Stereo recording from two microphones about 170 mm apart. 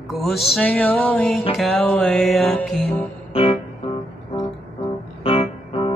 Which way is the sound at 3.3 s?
35° left (ahead or behind).